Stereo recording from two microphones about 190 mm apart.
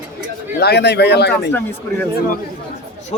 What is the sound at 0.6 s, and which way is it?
Speech, 60° left (ahead or behind).